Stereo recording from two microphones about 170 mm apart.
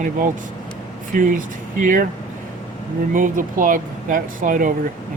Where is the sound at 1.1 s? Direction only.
50° right (ahead or behind).